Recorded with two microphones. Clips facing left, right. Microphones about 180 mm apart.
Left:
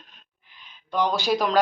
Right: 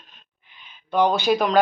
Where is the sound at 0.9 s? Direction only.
60° right (ahead or behind).